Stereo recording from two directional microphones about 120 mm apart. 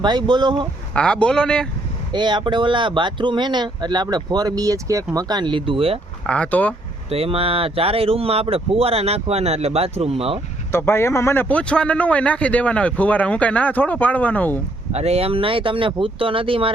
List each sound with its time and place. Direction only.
0.0 s speech: 40° right (ahead or behind)
0.9 s speech: 10° left (ahead or behind)
2.1 s speech: 40° right (ahead or behind)
6.2 s speech: 10° left (ahead or behind)
7.1 s speech: 55° right (ahead or behind)
10.7 s speech: 20° left (ahead or behind)
14.9 s speech: 60° right (ahead or behind)